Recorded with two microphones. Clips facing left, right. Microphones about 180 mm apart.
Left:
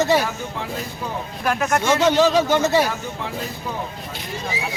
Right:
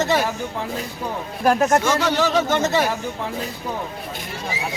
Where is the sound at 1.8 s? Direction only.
20° left (ahead or behind).